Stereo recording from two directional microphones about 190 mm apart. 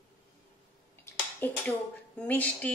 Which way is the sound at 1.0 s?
10° left (ahead or behind).